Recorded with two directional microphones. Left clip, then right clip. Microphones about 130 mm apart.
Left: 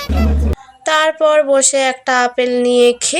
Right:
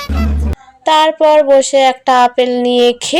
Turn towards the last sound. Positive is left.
turn(degrees=-20)  # may be behind; listen again after turning